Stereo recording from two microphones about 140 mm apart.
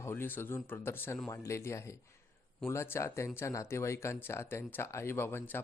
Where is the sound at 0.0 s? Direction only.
15° left (ahead or behind).